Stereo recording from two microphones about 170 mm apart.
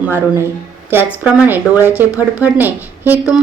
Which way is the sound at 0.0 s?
15° right (ahead or behind).